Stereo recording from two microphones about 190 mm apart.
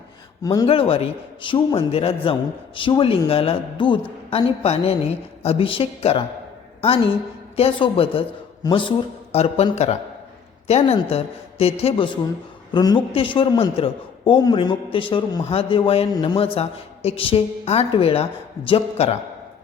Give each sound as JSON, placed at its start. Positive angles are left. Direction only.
{"t": 0.4, "sound": "a man's voice", "side_deg": 20}
{"t": 0.7, "sound": "a man's voice", "side_deg": 30}
{"t": 7.5, "sound": "a woman's voice", "side_deg": 30}
{"t": 10.7, "sound": "a woman's voice", "side_deg": 35}